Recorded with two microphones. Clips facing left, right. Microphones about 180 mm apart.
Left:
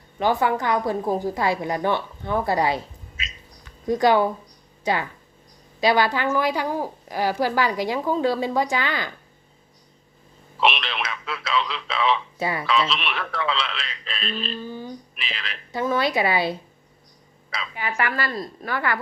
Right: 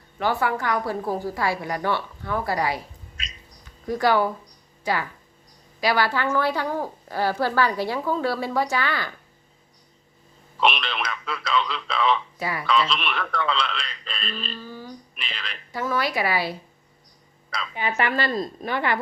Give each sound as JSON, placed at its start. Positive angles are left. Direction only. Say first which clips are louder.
{"t": 0.2, "sound": "a woman's voice", "louder": "left 3 dB", "side_deg": 20}
{"t": 3.2, "sound": "a sound", "louder": "left 4 dB", "side_deg": 0}
{"t": 3.8, "sound": "a woman's voice", "louder": "left 3 dB", "side_deg": 20}
{"t": 10.6, "sound": "speech", "louder": "even", "side_deg": 0}
{"t": 12.4, "sound": "a woman's voice", "louder": "left 3 dB", "side_deg": 25}
{"t": 12.6, "sound": "speech", "louder": "right 2 dB", "side_deg": 0}
{"t": 14.6, "sound": "speech", "louder": "left 4 dB", "side_deg": 20}
{"t": 15.1, "sound": "speech", "louder": "left 2 dB", "side_deg": 0}
{"t": 15.7, "sound": "a woman's voice", "louder": "left 3 dB", "side_deg": 20}
{"t": 17.7, "sound": "a woman's voice", "louder": "right 2 dB", "side_deg": -25}